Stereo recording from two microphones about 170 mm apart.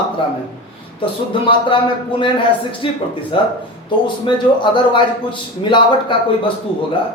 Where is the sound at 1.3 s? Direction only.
30° left (ahead or behind).